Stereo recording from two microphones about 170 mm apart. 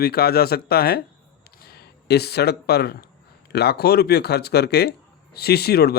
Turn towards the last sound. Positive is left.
turn(degrees=70)  # may be behind; listen again after turning